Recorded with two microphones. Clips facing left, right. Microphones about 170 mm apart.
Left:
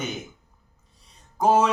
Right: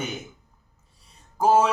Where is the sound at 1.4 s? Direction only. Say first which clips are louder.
Even; 5° right (ahead or behind).